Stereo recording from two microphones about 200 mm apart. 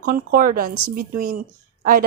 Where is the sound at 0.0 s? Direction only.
45° right (ahead or behind).